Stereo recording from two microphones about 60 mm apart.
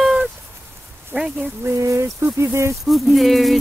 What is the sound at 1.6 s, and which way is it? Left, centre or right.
Speech, right.